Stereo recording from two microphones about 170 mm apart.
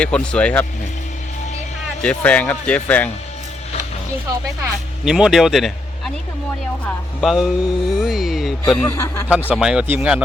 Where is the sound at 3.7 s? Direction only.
40° left (ahead or behind).